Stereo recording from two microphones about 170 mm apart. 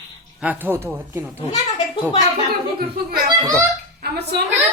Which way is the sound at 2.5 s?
65° right (ahead or behind).